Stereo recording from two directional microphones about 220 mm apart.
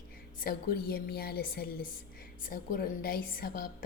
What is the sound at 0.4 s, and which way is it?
A woman's voice, 45° left (ahead or behind).